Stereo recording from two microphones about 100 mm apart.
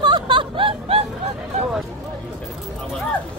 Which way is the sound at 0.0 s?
50° right (ahead or behind).